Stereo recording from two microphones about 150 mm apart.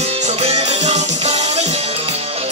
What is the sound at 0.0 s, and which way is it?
Music, 45° right (ahead or behind).